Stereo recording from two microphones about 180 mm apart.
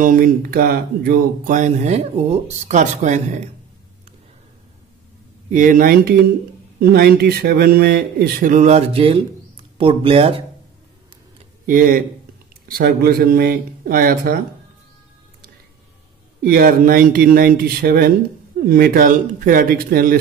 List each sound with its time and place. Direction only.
0.0 s speech: 50° right (ahead or behind)
5.5 s speech: 50° right (ahead or behind); by 10.4 s 30° right (ahead or behind)
11.6 s speech: 50° right (ahead or behind)
16.4 s speech: 55° right (ahead or behind)